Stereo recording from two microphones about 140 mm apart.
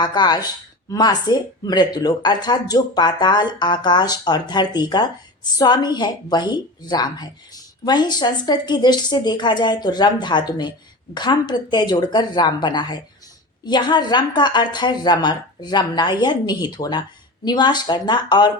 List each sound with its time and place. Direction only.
0.0 s speech: 30° left (ahead or behind)